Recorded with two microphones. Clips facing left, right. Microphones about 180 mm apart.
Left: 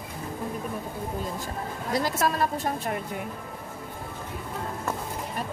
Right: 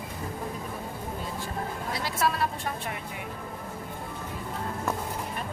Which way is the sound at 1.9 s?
45° left (ahead or behind).